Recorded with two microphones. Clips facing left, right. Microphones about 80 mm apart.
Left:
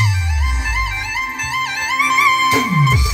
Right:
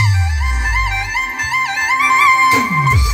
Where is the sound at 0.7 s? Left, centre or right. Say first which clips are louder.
Right 4 dB; right.